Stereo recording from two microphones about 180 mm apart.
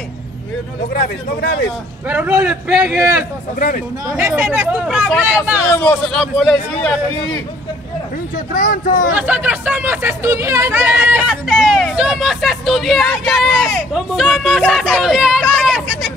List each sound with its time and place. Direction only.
1.4 s a man's voice: 65° left (ahead or behind)
2.0 s a man's voice: 10° right (ahead or behind)
3.5 s speech: 50° left (ahead or behind)
4.1 s a man's voice: 5° right (ahead or behind)
8.5 s speech: 50° left (ahead or behind)
9.1 s speech: 10° right (ahead or behind)